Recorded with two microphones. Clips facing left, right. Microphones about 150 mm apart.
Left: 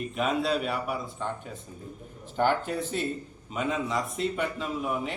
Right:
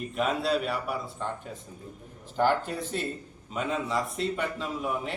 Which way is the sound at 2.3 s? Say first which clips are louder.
Even; centre (ahead or behind).